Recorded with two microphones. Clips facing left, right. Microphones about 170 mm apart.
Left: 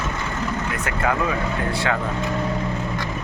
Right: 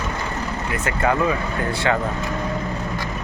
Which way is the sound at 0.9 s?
Centre (ahead or behind).